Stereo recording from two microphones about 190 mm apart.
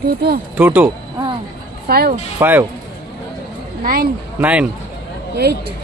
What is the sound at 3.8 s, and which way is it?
Speech, 50° right (ahead or behind).